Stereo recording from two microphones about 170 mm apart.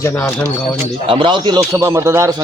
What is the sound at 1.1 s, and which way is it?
A man's voice, 30° right (ahead or behind).